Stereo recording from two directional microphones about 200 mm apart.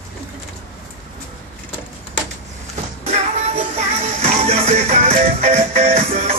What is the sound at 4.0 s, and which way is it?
Music, 35° right (ahead or behind).